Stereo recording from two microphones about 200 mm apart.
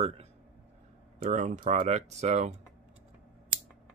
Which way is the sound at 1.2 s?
35° right (ahead or behind).